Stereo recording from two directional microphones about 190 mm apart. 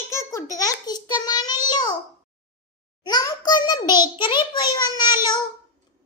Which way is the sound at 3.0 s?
20° left (ahead or behind).